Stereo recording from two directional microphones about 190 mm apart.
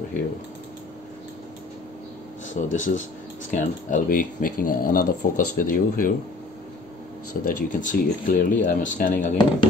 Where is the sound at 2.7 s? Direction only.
40° left (ahead or behind).